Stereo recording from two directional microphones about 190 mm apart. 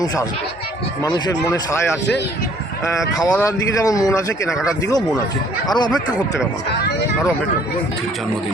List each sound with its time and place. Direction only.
1.0 s speech: 20° left (ahead or behind)
2.8 s a man's voice: 20° left (ahead or behind)
4.4 s speech: centre (ahead or behind)
5.6 s speech: 20° left (ahead or behind)